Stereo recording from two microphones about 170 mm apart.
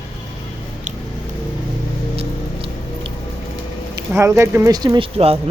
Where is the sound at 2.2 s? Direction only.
30° right (ahead or behind).